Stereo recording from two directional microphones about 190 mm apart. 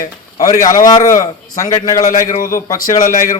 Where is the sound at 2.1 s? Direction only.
45° left (ahead or behind).